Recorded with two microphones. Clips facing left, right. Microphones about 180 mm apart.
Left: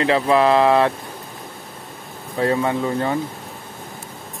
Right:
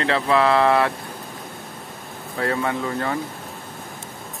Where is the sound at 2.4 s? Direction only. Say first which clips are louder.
Left 4 dB; 20° left (ahead or behind).